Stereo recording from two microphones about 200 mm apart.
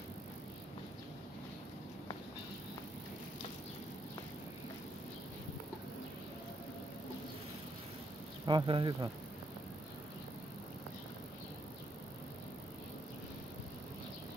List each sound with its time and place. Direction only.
8.5 s speech: 25° right (ahead or behind)